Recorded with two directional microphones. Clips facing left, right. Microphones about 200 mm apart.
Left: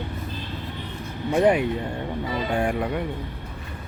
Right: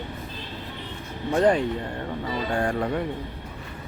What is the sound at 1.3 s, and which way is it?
Speech, 10° left (ahead or behind).